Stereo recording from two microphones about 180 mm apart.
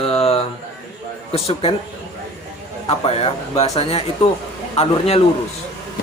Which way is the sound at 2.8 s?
35° left (ahead or behind).